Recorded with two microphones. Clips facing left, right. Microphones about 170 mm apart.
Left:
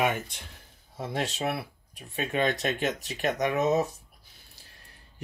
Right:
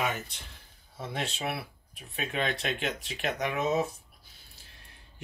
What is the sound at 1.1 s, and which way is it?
Speech, 40° left (ahead or behind).